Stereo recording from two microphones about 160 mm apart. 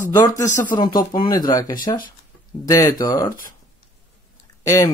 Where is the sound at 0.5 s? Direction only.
50° left (ahead or behind).